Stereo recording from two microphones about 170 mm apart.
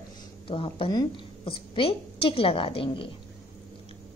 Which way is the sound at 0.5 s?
30° left (ahead or behind).